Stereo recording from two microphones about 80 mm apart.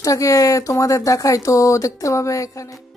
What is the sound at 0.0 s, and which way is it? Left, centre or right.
Speech, left.